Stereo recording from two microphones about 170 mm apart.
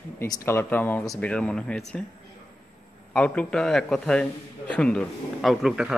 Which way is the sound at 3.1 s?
5° left (ahead or behind).